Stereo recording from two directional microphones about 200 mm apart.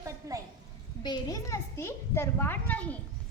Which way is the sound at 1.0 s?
20° left (ahead or behind).